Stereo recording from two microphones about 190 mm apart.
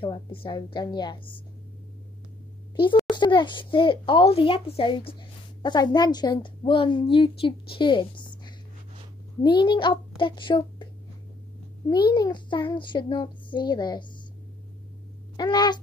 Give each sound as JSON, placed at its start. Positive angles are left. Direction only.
{"t": 0.0, "sound": "a woman's voice", "side_deg": 25}
{"t": 2.7, "sound": "a child's voice", "side_deg": 25}
{"t": 8.2, "sound": "a sound", "side_deg": 25}
{"t": 9.4, "sound": "a woman's voice", "side_deg": 25}
{"t": 12.1, "sound": "a woman's voice", "side_deg": 20}
{"t": 15.3, "sound": "a woman's voice", "side_deg": 20}